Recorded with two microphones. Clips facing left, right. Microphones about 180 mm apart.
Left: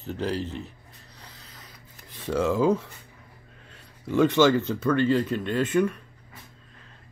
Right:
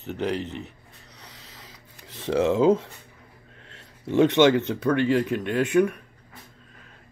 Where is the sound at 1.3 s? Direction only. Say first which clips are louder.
Right 2 dB; 90° right.